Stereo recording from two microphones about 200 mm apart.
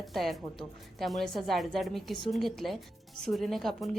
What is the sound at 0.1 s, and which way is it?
Speech, centre (ahead or behind).